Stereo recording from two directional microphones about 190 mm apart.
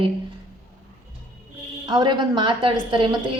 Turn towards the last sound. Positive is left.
turn(degrees=-25)  # may be behind; listen again after turning